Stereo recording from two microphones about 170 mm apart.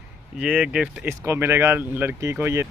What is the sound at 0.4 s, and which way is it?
A man's voice, 5° right (ahead or behind).